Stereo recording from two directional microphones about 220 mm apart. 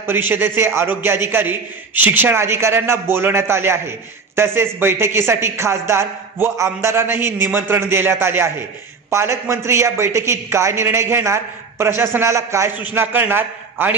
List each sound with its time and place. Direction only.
0.0 s a man's voice: 10° right (ahead or behind)